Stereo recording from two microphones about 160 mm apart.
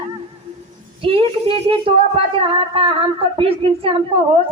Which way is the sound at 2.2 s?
35° right (ahead or behind).